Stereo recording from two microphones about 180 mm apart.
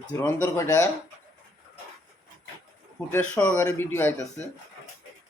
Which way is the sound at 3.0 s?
10° left (ahead or behind).